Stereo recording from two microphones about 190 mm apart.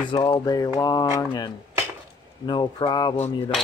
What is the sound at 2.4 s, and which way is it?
Speech, 20° left (ahead or behind).